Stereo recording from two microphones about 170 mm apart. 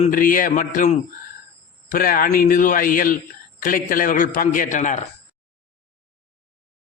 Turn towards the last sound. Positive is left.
turn(degrees=45)  # may be behind; listen again after turning